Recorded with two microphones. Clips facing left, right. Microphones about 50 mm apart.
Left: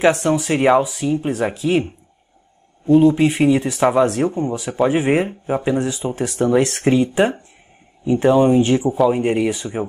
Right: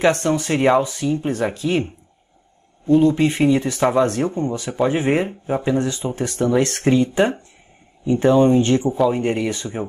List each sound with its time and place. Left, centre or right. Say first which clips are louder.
0.0 s speech: left 2 dB; centre
2.9 s speech: left 2 dB; centre